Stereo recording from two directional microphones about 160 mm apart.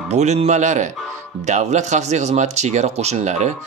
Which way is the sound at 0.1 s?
45° right (ahead or behind).